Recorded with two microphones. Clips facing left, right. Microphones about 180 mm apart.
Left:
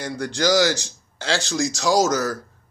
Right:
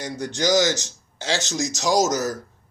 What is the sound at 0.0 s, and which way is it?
A man's voice, 20° right (ahead or behind).